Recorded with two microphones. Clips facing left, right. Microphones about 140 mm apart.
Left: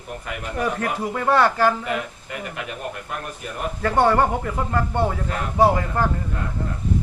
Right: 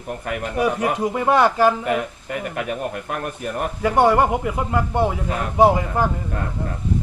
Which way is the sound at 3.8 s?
10° right (ahead or behind).